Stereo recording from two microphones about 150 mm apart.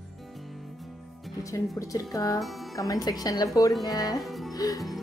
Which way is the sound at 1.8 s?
20° left (ahead or behind).